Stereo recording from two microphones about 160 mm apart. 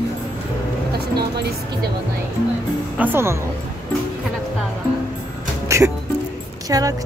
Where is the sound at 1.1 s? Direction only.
90° right.